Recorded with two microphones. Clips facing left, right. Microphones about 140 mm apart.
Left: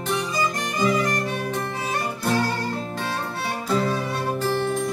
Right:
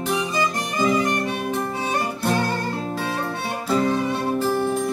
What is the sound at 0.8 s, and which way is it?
Music, 25° right (ahead or behind).